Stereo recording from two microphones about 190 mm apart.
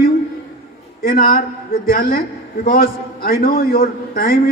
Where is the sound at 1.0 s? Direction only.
50° left (ahead or behind).